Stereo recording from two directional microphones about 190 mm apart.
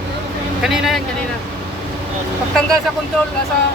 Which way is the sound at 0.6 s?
Centre (ahead or behind).